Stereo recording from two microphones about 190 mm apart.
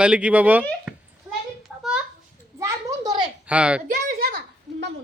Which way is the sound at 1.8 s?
5° right (ahead or behind).